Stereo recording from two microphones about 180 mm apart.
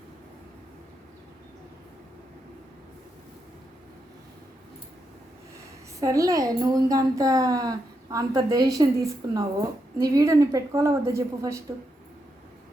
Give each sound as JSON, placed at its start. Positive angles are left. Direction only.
{"t": 6.0, "sound": "a woman's voice", "side_deg": -20}